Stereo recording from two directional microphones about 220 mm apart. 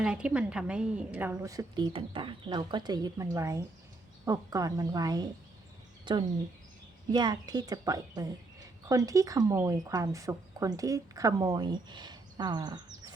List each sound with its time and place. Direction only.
0.0 s speech: 5° right (ahead or behind)